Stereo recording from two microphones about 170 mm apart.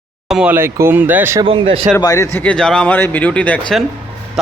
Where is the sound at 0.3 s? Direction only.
5° right (ahead or behind).